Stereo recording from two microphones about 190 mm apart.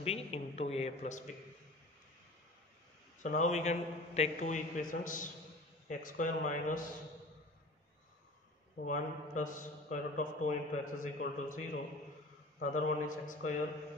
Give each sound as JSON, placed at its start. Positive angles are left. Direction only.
{"t": 0.0, "sound": "a man's voice", "side_deg": 30}
{"t": 3.2, "sound": "a man's voice", "side_deg": 40}
{"t": 8.7, "sound": "a man's voice", "side_deg": 40}